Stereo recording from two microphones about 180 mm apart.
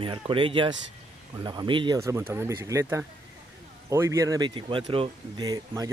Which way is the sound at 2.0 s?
15° right (ahead or behind).